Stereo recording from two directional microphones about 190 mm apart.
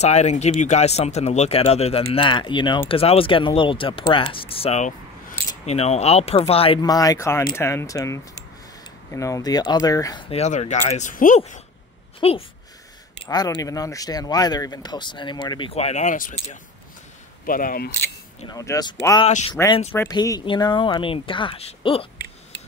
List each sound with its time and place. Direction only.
0.0 s speech: 35° left (ahead or behind); by 10.2 s 20° left (ahead or behind)
10.3 s speech: 35° left (ahead or behind); by 17.9 s 50° left (ahead or behind)
18.5 s speech: 20° left (ahead or behind)